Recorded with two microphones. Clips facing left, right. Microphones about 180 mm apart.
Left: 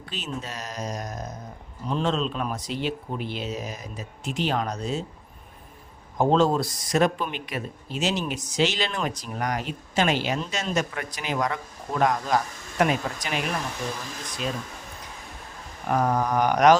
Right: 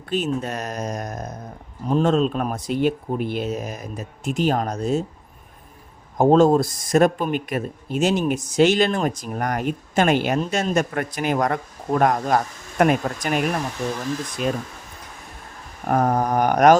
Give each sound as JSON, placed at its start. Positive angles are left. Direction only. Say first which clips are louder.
{"t": 0.1, "sound": "speech", "louder": "right 10 dB", "side_deg": -50}
{"t": 6.1, "sound": "speech", "louder": "right 6 dB", "side_deg": -45}
{"t": 15.9, "sound": "speech", "louder": "right 4 dB", "side_deg": -50}